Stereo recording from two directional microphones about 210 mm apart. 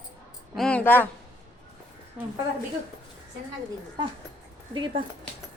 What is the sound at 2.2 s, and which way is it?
Speech, 5° right (ahead or behind).